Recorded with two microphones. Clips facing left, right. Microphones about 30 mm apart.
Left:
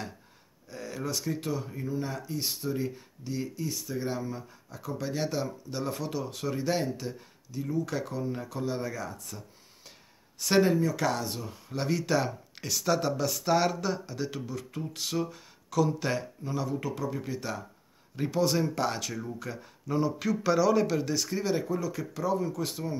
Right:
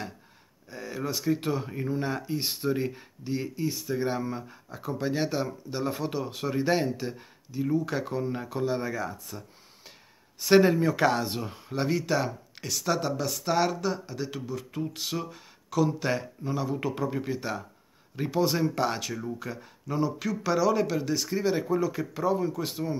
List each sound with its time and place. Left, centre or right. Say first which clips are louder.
0.7 s speech: right 2 dB; centre
1.5 s speech: right 3 dB; right; by 9.4 s centre
10.4 s speech: right 4 dB; centre
11.0 s speech: right 5 dB; right
11.7 s speech: right 1 dB; centre
16.7 s speech: right 3 dB; right
17.2 s speech: right 3 dB; centre
21.6 s speech: right 5 dB; right